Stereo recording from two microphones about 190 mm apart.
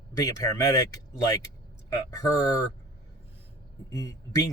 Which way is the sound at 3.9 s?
20° left (ahead or behind).